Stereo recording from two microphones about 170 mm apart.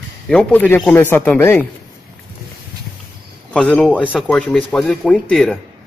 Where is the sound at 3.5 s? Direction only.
5° left (ahead or behind).